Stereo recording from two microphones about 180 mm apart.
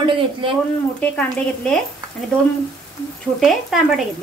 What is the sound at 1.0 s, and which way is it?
Speech, 10° left (ahead or behind).